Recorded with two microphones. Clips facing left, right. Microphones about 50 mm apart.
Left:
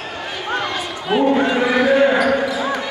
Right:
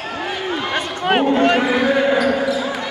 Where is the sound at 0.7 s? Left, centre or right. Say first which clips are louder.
Right 2 dB; right.